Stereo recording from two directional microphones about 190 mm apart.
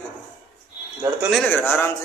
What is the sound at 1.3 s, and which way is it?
Speech, 5° left (ahead or behind).